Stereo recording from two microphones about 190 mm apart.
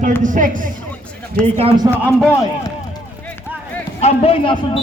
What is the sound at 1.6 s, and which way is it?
Speech, 30° right (ahead or behind).